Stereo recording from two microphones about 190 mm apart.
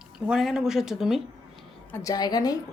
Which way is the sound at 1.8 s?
15° left (ahead or behind).